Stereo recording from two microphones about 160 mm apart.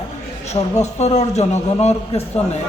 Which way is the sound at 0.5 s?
45° left (ahead or behind).